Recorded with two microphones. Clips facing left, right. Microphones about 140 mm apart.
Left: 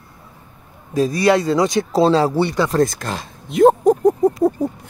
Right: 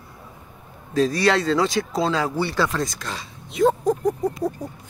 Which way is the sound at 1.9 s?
30° left (ahead or behind).